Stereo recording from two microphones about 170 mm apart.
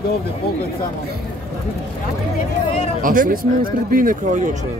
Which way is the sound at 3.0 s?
55° right (ahead or behind).